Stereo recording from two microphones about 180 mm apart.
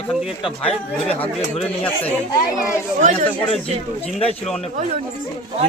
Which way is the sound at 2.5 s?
40° right (ahead or behind).